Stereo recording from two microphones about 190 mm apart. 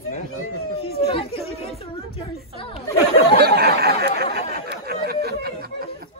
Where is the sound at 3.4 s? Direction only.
60° right (ahead or behind).